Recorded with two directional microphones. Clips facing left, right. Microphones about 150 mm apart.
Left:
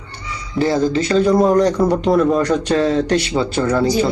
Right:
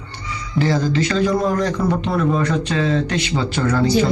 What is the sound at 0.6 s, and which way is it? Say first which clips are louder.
A man's voice: left 3 dB; 30° left (ahead or behind).